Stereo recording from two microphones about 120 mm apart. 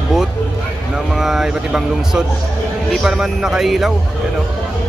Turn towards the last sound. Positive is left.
turn(degrees=0)  # may be behind; listen again after turning